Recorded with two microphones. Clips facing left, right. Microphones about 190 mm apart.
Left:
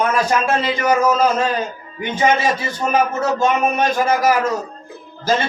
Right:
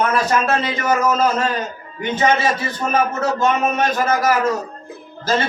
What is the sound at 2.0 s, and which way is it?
A man's voice, 10° left (ahead or behind).